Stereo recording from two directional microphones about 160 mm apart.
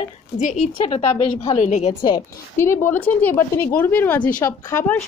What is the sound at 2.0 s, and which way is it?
A woman's voice, 20° left (ahead or behind).